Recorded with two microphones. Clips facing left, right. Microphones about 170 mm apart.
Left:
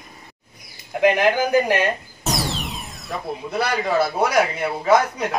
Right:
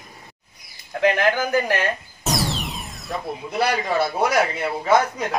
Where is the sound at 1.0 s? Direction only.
15° left (ahead or behind).